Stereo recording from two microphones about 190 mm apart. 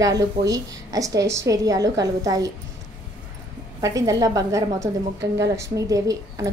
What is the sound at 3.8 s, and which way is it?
A woman's voice, 15° right (ahead or behind).